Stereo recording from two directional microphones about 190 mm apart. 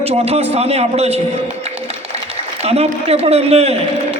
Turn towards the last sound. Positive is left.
turn(degrees=-35)  # may be behind; listen again after turning